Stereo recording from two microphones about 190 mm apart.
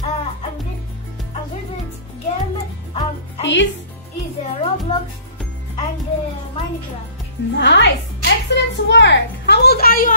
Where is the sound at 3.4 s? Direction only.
70° left (ahead or behind).